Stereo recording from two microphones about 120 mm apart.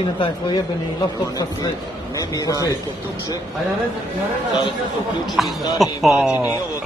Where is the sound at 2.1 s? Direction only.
30° left (ahead or behind).